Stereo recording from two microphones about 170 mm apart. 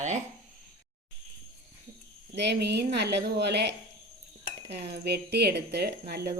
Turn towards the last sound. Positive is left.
turn(degrees=-70)  # may be behind; listen again after turning